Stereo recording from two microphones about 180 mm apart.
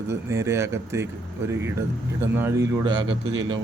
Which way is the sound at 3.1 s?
90° right.